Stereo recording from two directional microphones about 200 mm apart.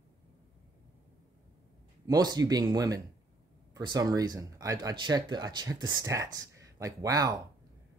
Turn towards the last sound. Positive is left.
turn(degrees=-15)  # may be behind; listen again after turning